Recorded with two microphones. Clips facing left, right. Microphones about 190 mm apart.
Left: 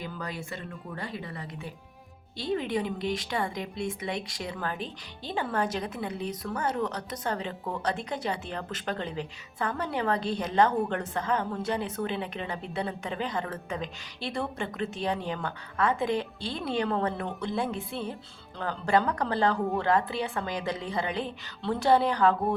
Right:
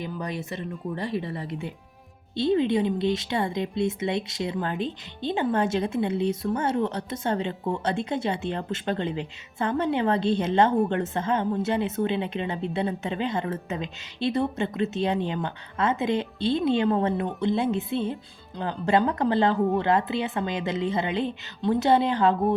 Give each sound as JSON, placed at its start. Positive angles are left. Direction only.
{"t": 0.0, "sound": "a woman's voice", "side_deg": -20}